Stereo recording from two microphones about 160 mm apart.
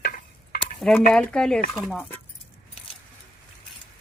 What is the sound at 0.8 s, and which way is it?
Speech, centre (ahead or behind).